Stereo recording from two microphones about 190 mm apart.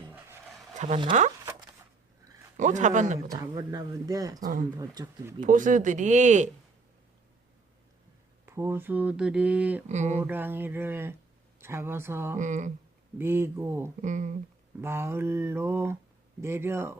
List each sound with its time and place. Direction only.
0.7 s a sound: 40° right (ahead or behind)
2.6 s speech: 40° right (ahead or behind)
3.4 s speech: 20° right (ahead or behind)
5.4 s speech: 45° right (ahead or behind)
8.4 s speech: 15° right (ahead or behind)
9.9 s speech: 40° right (ahead or behind)
10.2 s speech: 10° right (ahead or behind)
12.4 s speech: 40° right (ahead or behind)
13.1 s speech: 10° right (ahead or behind)
14.0 s speech: 40° right (ahead or behind)
14.8 s speech: 10° right (ahead or behind)